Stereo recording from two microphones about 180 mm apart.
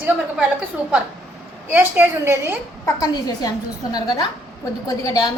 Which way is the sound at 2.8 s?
20° left (ahead or behind).